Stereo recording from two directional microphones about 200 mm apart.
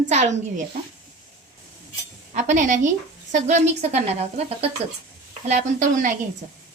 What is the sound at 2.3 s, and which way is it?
Speech, 35° right (ahead or behind).